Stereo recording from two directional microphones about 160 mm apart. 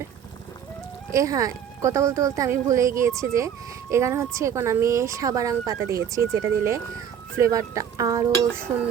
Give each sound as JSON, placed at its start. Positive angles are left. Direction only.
{"t": 1.1, "sound": "speech", "side_deg": -20}